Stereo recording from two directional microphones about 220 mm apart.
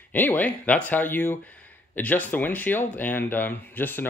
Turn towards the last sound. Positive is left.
turn(degrees=10)  # may be behind; listen again after turning